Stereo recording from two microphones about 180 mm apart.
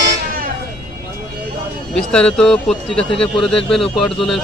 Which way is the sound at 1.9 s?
5° left (ahead or behind).